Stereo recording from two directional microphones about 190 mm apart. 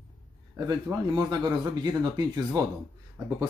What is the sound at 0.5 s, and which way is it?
Speech, 15° right (ahead or behind).